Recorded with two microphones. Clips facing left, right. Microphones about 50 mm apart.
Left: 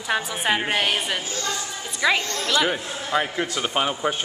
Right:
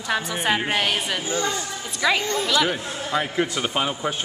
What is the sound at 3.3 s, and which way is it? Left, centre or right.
Speech, centre.